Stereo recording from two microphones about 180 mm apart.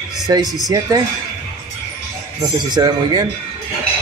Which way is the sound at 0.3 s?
20° right (ahead or behind).